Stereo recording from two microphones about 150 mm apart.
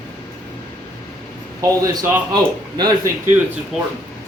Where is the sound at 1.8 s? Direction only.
25° right (ahead or behind).